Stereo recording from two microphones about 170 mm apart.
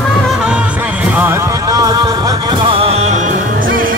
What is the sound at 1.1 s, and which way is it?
Music, 15° right (ahead or behind).